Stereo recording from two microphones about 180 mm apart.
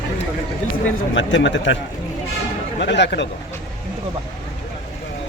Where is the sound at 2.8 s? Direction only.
75° left (ahead or behind).